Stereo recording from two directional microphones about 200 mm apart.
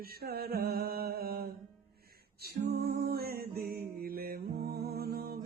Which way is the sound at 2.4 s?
50° right (ahead or behind).